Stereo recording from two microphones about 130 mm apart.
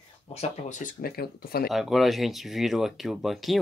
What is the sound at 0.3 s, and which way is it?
Speech, 60° left (ahead or behind).